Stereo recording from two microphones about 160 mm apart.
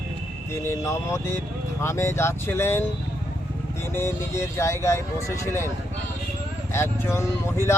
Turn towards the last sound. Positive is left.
turn(degrees=15)  # may be behind; listen again after turning